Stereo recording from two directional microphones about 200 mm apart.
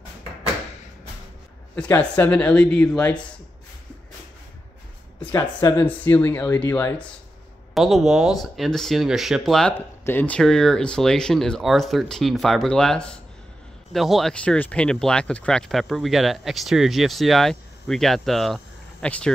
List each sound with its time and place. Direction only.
1.8 s speech: 10° left (ahead or behind)
5.2 s speech: 15° left (ahead or behind)